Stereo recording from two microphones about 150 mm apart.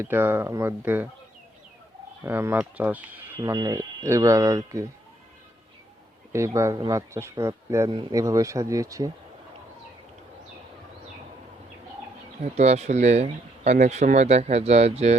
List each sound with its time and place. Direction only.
0.0 s speech: 15° right (ahead or behind)
2.2 s speech: 15° right (ahead or behind)
3.4 s speech: 25° right (ahead or behind)
6.3 s speech: 20° right (ahead or behind)
12.4 s speech: 45° right (ahead or behind)